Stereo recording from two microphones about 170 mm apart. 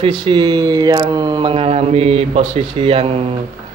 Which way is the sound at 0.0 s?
25° right (ahead or behind).